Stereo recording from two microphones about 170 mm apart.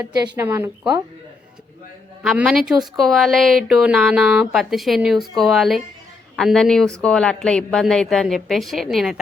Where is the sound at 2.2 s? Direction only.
Centre (ahead or behind).